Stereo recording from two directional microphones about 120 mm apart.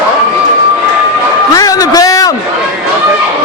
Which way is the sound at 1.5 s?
30° left (ahead or behind).